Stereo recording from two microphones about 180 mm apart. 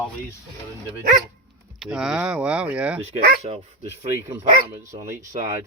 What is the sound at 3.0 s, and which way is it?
Speech, 35° right (ahead or behind).